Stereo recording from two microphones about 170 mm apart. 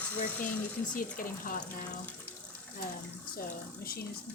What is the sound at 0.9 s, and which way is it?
Speech, 55° left (ahead or behind).